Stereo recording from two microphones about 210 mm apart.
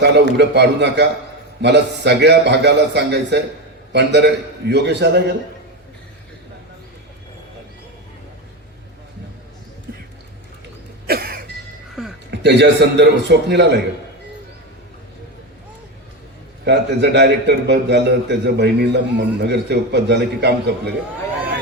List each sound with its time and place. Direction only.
0.0 s a man's voice: 55° right (ahead or behind)
11.0 s cough: 45° right (ahead or behind)
12.3 s a man's voice: 55° right (ahead or behind)
16.6 s a man's voice: 55° right (ahead or behind)